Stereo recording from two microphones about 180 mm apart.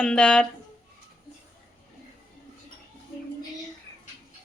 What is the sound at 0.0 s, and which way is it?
Speech, 5° left (ahead or behind).